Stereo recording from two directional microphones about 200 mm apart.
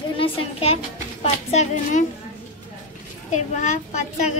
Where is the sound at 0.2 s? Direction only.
30° left (ahead or behind).